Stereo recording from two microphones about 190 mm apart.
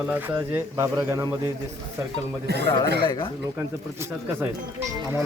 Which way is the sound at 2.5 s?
60° right (ahead or behind).